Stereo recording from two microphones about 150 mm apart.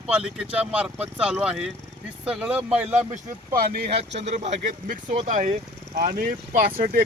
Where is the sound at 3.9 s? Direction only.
45° right (ahead or behind).